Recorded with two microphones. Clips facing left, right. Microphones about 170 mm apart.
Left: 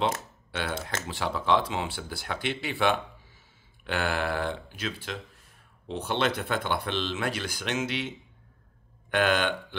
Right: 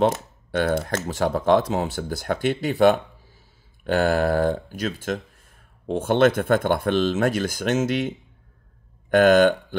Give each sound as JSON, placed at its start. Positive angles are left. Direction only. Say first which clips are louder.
{"t": 0.0, "sound": "speech", "louder": "right 8 dB", "side_deg": -50}
{"t": 9.1, "sound": "speech", "louder": "right 10 dB", "side_deg": -45}